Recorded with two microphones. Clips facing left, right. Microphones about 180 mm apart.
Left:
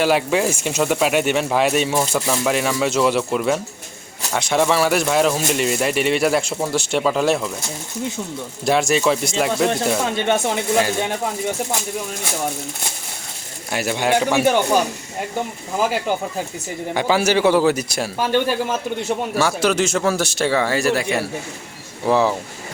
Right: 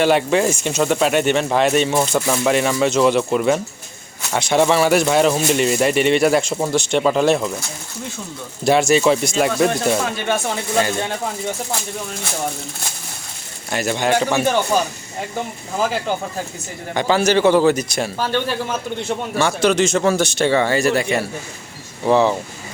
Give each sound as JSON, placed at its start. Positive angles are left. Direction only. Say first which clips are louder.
{"t": 0.0, "sound": "speech", "louder": "right 2 dB", "side_deg": 5}
{"t": 8.6, "sound": "speech", "louder": "right 3 dB", "side_deg": 0}
{"t": 10.2, "sound": "speech", "louder": "left 2 dB", "side_deg": 25}
{"t": 10.8, "sound": "speech", "louder": "right 2 dB", "side_deg": 5}
{"t": 13.7, "sound": "a man's voice", "louder": "right 1 dB", "side_deg": 10}